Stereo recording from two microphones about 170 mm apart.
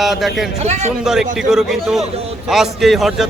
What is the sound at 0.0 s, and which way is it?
Speech, centre (ahead or behind).